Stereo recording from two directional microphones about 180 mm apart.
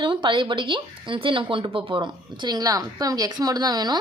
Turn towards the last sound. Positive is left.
turn(degrees=-20)  # may be behind; listen again after turning